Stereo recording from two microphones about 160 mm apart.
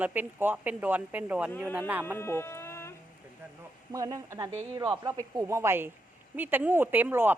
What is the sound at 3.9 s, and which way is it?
Speech, 20° right (ahead or behind).